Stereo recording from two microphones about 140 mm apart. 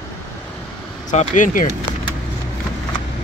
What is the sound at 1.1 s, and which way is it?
Speech, 65° left (ahead or behind).